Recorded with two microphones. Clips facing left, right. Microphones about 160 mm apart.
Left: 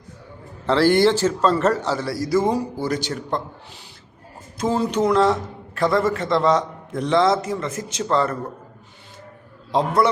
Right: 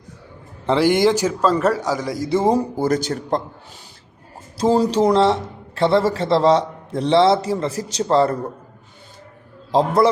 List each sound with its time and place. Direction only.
0.7 s a man's voice: 15° right (ahead or behind)
2.3 s a man's voice: 30° right (ahead or behind)
2.6 s speech: 45° right (ahead or behind)
4.5 s a man's voice: 35° right (ahead or behind)
9.7 s a man's voice: 30° right (ahead or behind)